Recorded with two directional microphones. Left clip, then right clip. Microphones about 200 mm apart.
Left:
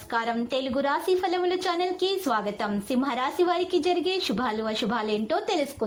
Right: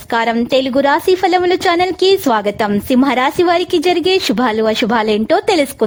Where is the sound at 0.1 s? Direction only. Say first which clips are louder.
Right 13 dB; 45° right (ahead or behind).